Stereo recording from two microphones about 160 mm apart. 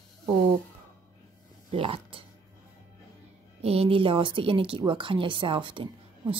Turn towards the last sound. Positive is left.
turn(degrees=-35)  # may be behind; listen again after turning